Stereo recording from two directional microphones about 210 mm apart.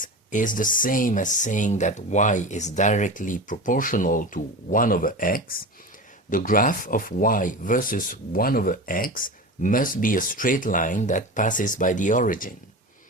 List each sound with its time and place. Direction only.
0.0 s speech: 40° left (ahead or behind)